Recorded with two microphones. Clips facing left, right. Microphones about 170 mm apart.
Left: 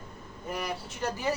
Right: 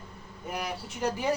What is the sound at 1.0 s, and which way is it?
Speech, 15° right (ahead or behind).